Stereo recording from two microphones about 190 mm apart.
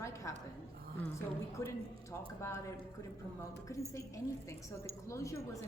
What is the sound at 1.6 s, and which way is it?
Speech, 15° left (ahead or behind).